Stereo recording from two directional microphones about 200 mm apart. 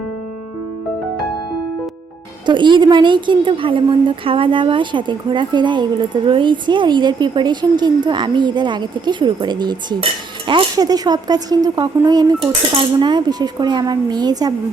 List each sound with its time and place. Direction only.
2.5 s a woman's voice: 25° right (ahead or behind)